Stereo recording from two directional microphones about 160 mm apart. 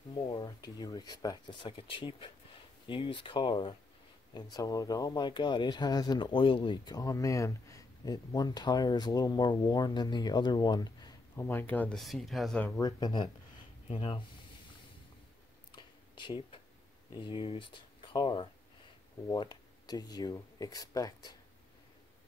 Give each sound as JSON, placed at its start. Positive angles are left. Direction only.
{"t": 0.3, "sound": "speech", "side_deg": 25}
{"t": 11.4, "sound": "speech", "side_deg": 10}
{"t": 12.6, "sound": "speech", "side_deg": 20}
{"t": 15.7, "sound": "a sound", "side_deg": 30}
{"t": 17.1, "sound": "speech", "side_deg": 30}